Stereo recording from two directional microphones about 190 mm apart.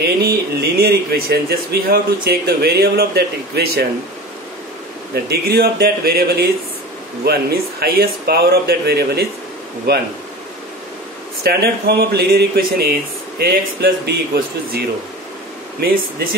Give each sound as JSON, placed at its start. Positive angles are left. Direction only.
{"t": 0.0, "sound": "speech", "side_deg": -55}
{"t": 5.1, "sound": "speech", "side_deg": -55}
{"t": 11.4, "sound": "speech", "side_deg": -55}